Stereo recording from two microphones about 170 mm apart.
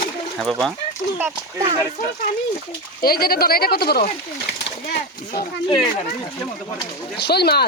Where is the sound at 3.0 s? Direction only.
60° left (ahead or behind).